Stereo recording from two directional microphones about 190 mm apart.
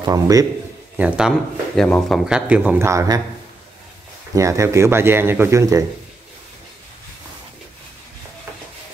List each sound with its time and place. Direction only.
0.0 s a man's voice: 20° right (ahead or behind)
0.9 s speech: 5° right (ahead or behind)
4.4 s speech: 15° right (ahead or behind)